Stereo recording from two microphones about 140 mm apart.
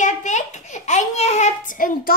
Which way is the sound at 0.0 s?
60° left (ahead or behind).